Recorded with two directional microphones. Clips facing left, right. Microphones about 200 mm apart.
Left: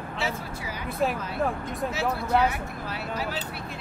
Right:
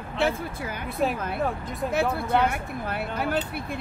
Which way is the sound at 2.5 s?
55° right (ahead or behind).